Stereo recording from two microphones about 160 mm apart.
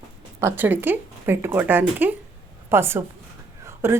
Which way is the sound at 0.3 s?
15° right (ahead or behind).